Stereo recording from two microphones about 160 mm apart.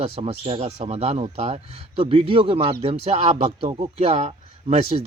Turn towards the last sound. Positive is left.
turn(degrees=-40)  # may be behind; listen again after turning